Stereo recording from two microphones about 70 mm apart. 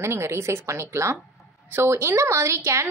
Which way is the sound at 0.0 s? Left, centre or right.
Right.